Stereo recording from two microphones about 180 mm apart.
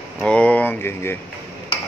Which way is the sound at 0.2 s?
5° left (ahead or behind).